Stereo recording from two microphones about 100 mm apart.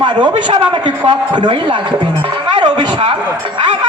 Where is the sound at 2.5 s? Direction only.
50° right (ahead or behind).